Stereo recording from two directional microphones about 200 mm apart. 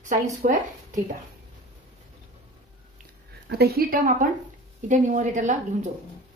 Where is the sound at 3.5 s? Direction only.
50° right (ahead or behind).